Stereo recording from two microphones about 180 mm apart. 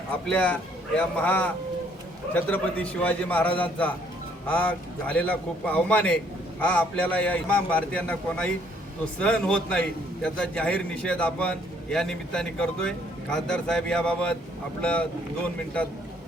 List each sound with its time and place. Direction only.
0.3 s a man's voice: 5° left (ahead or behind)